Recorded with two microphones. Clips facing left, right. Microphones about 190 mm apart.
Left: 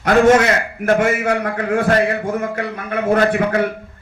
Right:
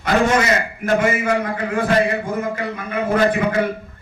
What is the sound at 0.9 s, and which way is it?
A man's voice, 70° left (ahead or behind).